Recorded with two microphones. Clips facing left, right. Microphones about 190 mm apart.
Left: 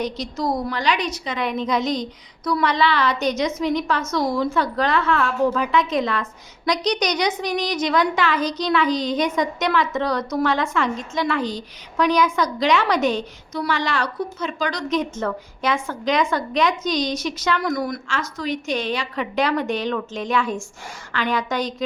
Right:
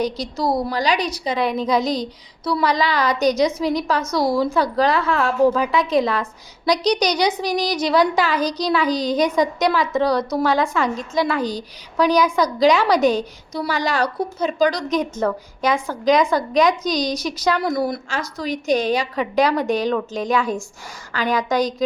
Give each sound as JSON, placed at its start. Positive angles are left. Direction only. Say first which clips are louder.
{"t": 0.4, "sound": "a woman's voice", "louder": "right 2 dB", "side_deg": -35}